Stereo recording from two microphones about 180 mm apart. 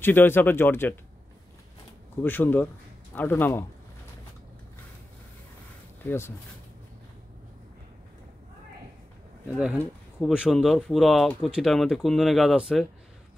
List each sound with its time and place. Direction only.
0.0 s speech: 10° left (ahead or behind)
2.2 s speech: 10° left (ahead or behind)
6.0 s speech: 15° left (ahead or behind)
10.2 s speech: 5° right (ahead or behind)